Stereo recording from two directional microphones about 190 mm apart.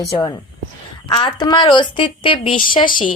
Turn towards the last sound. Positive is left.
turn(degrees=45)  # may be behind; listen again after turning